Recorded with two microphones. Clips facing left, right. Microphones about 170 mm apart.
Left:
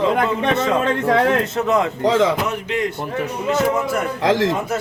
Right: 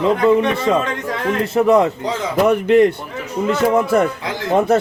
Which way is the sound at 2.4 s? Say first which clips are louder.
Right 10 dB; 55° right (ahead or behind).